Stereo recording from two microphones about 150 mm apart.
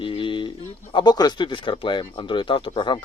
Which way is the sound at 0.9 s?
25° left (ahead or behind).